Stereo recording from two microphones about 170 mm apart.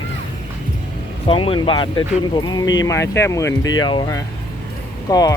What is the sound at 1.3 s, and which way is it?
Speech, 30° left (ahead or behind).